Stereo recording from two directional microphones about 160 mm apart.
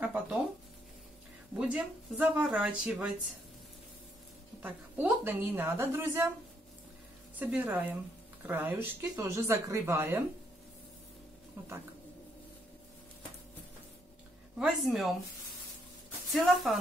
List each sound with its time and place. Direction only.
0.0 s a sound: 10° right (ahead or behind)
1.6 s speech: 5° right (ahead or behind)
4.6 s a woman's voice: 10° right (ahead or behind)
7.3 s a woman's voice: 10° right (ahead or behind)
14.6 s speech: centre (ahead or behind)
16.3 s speech: centre (ahead or behind)